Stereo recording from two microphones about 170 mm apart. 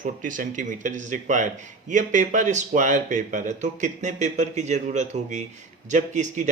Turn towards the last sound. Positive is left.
turn(degrees=-45)  # may be behind; listen again after turning